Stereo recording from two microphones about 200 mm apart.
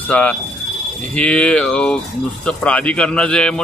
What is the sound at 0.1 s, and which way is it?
A man's voice, 5° left (ahead or behind).